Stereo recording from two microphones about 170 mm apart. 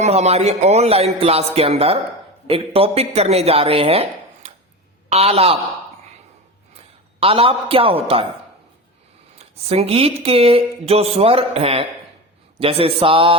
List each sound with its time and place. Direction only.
0.0 s speech: 40° right (ahead or behind)
5.0 s speech: 40° right (ahead or behind)
7.2 s speech: 35° right (ahead or behind)
9.4 s speech: 35° right (ahead or behind)